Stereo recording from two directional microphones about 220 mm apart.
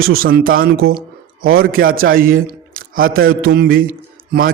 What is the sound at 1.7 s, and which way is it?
A man's voice, 40° right (ahead or behind).